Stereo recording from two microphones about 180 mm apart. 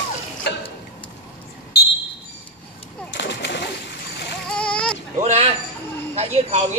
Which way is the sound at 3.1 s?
80° left.